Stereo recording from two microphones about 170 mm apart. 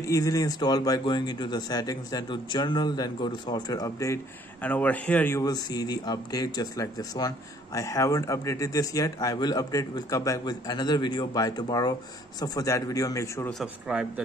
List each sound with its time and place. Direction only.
0.0 s speech: 20° left (ahead or behind)
5.4 s speech: 25° left (ahead or behind)
13.5 s speech: centre (ahead or behind)